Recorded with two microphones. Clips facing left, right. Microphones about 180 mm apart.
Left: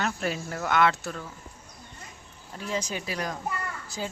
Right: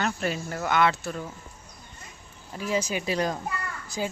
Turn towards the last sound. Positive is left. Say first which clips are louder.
# right 4 dB
turn(degrees=-15)  # may be behind; listen again after turning